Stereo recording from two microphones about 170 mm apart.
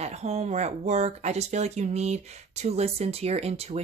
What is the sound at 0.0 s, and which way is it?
Speech, 40° right (ahead or behind).